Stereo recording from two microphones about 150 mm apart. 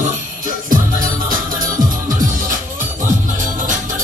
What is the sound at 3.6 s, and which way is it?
Music, 60° right (ahead or behind).